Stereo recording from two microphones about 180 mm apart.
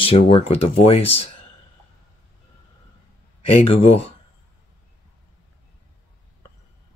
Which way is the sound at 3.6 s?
35° left (ahead or behind).